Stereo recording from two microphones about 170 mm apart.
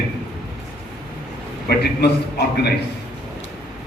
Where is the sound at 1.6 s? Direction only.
75° left (ahead or behind).